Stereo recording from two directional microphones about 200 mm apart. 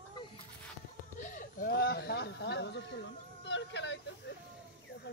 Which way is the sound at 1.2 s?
40° left (ahead or behind).